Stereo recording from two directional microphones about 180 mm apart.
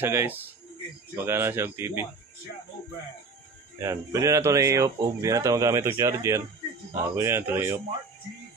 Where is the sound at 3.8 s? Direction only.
20° right (ahead or behind).